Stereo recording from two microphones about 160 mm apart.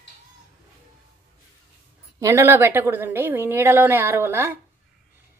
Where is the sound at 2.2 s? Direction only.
15° right (ahead or behind).